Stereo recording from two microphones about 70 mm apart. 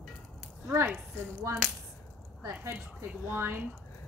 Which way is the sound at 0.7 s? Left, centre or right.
Right.